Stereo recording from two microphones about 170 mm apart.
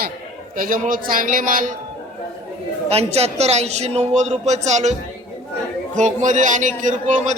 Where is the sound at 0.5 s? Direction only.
55° right (ahead or behind).